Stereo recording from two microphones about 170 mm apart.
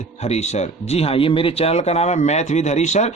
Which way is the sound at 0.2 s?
40° left (ahead or behind).